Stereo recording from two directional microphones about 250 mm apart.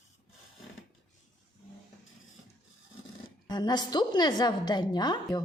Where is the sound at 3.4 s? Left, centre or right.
Centre.